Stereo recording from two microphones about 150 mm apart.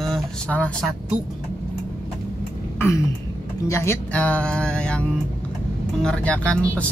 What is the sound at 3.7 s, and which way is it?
Speech, 15° left (ahead or behind).